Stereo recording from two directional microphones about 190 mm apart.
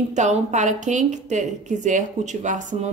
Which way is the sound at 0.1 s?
40° right (ahead or behind).